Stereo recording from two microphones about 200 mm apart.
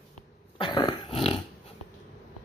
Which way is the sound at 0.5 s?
25° left (ahead or behind).